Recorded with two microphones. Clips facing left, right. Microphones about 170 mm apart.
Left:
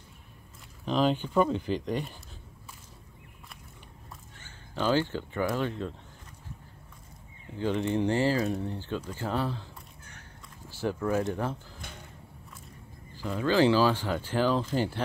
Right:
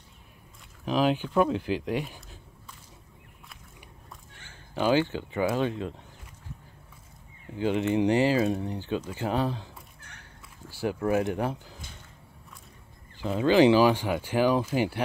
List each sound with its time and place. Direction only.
0.8 s speech: 5° right (ahead or behind)
4.7 s speech: 15° right (ahead or behind)
7.5 s speech: 15° right (ahead or behind)
10.7 s speech: 10° right (ahead or behind)
13.2 s speech: 20° right (ahead or behind)